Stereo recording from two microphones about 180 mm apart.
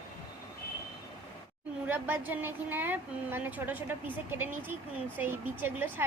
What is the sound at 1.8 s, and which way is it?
A woman's voice, 10° right (ahead or behind).